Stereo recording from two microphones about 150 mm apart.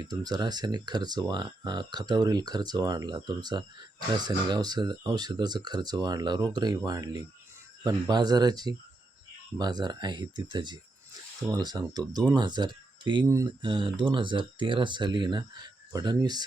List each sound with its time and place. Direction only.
0.0 s speech: 25° right (ahead or behind)
13.2 s speech: 20° right (ahead or behind)
13.6 s speech: 35° right (ahead or behind)